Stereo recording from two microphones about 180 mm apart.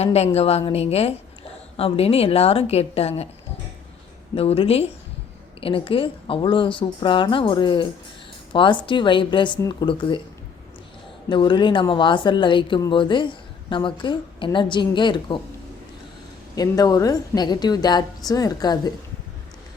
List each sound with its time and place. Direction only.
0.0 s a woman's voice: 35° left (ahead or behind)
4.4 s a woman's voice: 30° left (ahead or behind)
11.3 s speech: 25° left (ahead or behind)
16.6 s speech: 20° left (ahead or behind)